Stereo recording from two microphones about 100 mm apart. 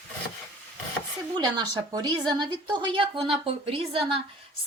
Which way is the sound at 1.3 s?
50° right (ahead or behind).